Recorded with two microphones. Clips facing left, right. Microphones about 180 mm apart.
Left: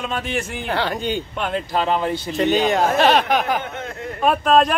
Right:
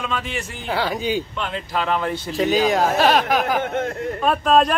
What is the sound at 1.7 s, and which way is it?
Speech, 30° left (ahead or behind).